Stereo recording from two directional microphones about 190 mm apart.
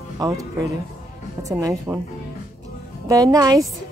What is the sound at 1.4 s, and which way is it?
Speech, 15° right (ahead or behind).